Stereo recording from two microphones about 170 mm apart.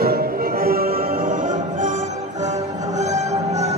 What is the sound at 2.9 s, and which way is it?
Music, 45° right (ahead or behind).